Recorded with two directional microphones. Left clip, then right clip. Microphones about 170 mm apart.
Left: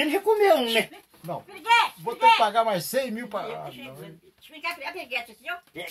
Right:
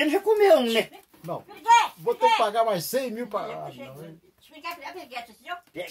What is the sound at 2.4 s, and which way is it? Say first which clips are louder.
Speech: left 1 dB; 60° right (ahead or behind).